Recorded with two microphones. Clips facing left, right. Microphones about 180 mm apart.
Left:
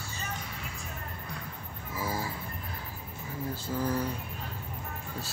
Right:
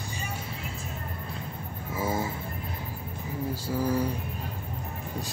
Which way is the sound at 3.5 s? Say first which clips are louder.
Right 3 dB; 10° right (ahead or behind).